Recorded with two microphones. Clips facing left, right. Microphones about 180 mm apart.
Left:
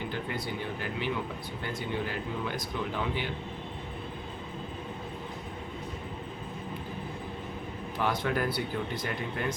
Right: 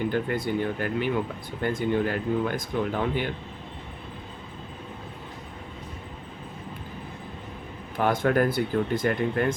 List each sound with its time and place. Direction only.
0.1 s speech: 50° right (ahead or behind)
7.9 s speech: 50° right (ahead or behind)